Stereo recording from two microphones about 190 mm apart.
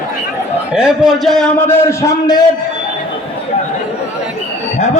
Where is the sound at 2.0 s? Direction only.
20° left (ahead or behind).